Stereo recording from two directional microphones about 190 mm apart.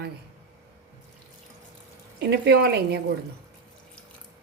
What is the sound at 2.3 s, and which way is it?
Speech, 55° right (ahead or behind).